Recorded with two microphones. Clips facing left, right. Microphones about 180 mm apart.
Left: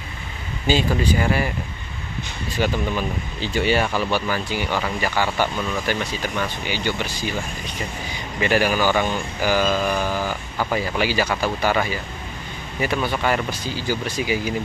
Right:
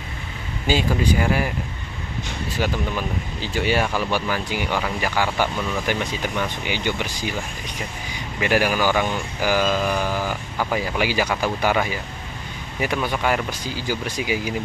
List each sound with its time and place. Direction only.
0.7 s speech: 10° right (ahead or behind)
2.6 s speech: 5° right (ahead or behind)
8.4 s speech: 10° right (ahead or behind)
13.1 s speech: 10° right (ahead or behind)